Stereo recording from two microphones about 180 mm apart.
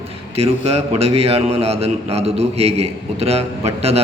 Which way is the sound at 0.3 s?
35° right (ahead or behind).